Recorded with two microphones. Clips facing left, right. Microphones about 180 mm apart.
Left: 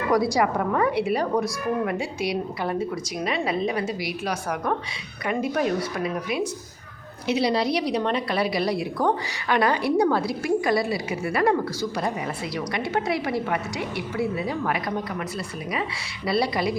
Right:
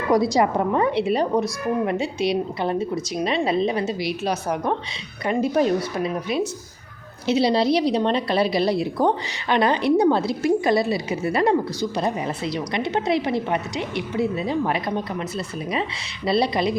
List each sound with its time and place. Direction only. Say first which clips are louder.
0.1 s a woman's voice: right 3 dB; 20° right (ahead or behind)